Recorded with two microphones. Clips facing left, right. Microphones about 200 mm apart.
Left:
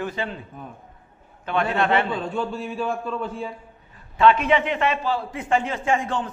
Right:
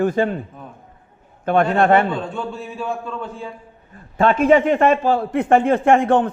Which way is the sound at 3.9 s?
45° right (ahead or behind).